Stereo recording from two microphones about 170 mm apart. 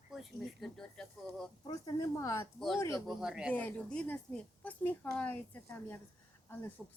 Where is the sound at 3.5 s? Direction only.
10° left (ahead or behind).